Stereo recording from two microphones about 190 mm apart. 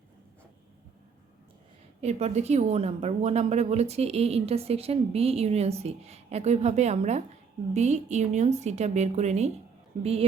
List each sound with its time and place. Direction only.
2.0 s a woman's voice: 35° right (ahead or behind)